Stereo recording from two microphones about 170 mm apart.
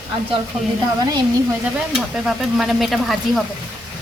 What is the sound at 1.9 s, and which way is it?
Speech, 5° right (ahead or behind).